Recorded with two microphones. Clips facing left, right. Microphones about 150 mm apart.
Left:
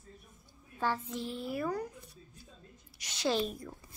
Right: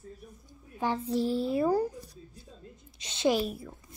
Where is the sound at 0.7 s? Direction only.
20° right (ahead or behind).